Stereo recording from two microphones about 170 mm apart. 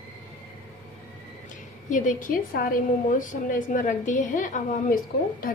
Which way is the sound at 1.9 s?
50° left (ahead or behind).